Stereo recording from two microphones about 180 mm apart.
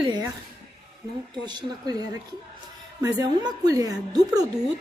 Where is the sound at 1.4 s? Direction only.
20° right (ahead or behind).